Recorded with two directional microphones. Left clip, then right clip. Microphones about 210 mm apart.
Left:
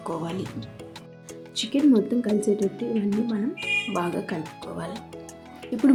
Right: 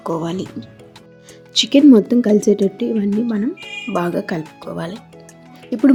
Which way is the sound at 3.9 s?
40° right (ahead or behind).